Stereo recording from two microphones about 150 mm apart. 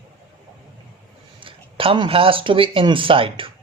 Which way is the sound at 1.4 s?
35° right (ahead or behind).